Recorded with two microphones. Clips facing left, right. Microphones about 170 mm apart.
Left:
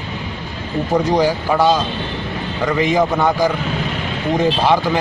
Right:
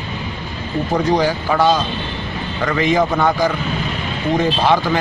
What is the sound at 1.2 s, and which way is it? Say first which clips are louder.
Speech: left 1 dB; 10° left (ahead or behind).